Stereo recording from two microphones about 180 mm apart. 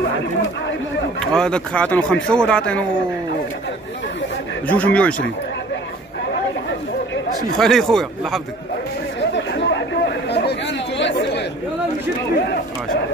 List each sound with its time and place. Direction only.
1.2 s speech: 5° left (ahead or behind)
4.6 s speech: 5° left (ahead or behind)
7.5 s speech: centre (ahead or behind)
9.3 s chatter: 75° left (ahead or behind)